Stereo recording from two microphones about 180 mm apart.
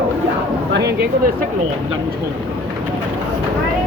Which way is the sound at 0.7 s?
65° right (ahead or behind).